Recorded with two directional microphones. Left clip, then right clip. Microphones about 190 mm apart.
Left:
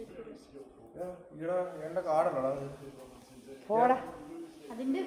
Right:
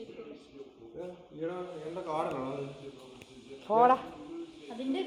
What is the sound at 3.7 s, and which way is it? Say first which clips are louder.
Speech: right 3 dB; 35° right (ahead or behind).